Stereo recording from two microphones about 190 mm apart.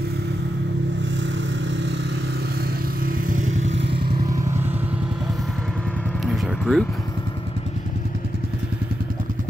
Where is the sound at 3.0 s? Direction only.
40° right (ahead or behind).